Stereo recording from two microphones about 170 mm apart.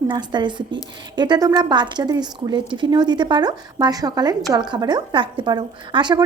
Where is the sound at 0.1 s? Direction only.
25° right (ahead or behind).